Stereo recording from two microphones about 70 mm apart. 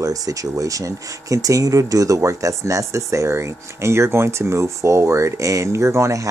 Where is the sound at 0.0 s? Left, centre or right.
Right.